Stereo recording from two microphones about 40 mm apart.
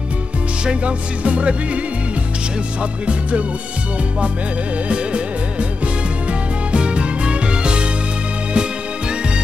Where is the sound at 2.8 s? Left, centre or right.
Right.